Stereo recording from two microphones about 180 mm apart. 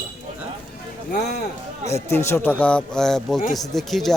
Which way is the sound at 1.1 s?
60° left (ahead or behind).